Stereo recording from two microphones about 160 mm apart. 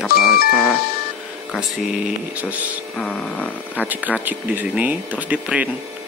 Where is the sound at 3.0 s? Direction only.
10° left (ahead or behind).